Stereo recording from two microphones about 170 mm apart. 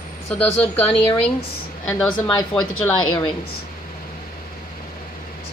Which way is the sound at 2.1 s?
30° left (ahead or behind).